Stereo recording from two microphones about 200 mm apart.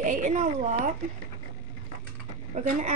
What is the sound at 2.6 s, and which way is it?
Speech, 40° right (ahead or behind).